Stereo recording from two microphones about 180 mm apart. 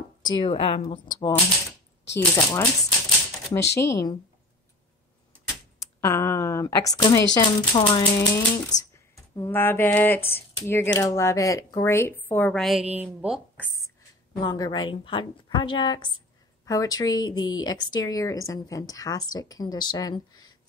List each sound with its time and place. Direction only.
0.2 s a woman's voice: 30° left (ahead or behind)
2.1 s a woman's voice: 20° left (ahead or behind)
3.7 s speech: 15° left (ahead or behind)
5.9 s a woman's voice: 15° left (ahead or behind); by 13.4 s 5° right (ahead or behind)
14.4 s a woman's voice: 25° left (ahead or behind)